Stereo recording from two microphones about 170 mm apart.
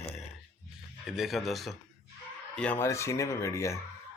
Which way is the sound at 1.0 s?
Centre (ahead or behind).